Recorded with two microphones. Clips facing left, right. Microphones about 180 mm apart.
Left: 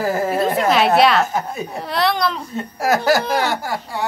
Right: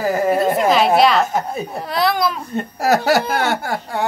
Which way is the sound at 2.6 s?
60° right (ahead or behind).